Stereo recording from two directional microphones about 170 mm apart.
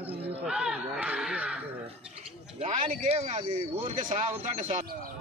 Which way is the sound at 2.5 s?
40° right (ahead or behind).